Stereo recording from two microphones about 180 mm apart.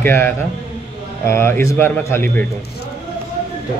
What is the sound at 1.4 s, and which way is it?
Speech, 15° left (ahead or behind).